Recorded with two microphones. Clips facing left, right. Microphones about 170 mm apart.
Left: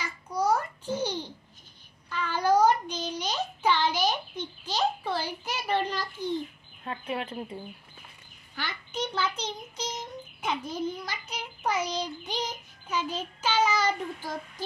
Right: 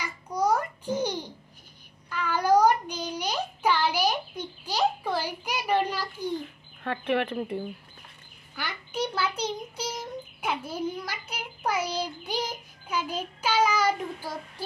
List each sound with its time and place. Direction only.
0.0 s babbling: 10° right (ahead or behind)
2.0 s child singing: 10° right (ahead or behind)
6.8 s speech: 70° right (ahead or behind)
8.5 s a sound: 10° right (ahead or behind)
12.3 s child singing: 10° right (ahead or behind)